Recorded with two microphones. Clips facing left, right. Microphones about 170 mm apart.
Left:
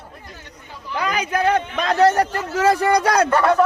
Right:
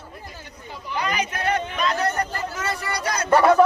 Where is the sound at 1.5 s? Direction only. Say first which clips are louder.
Left 6 dB; 90° left.